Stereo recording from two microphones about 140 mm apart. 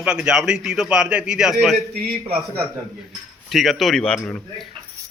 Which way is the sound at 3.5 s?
Centre (ahead or behind).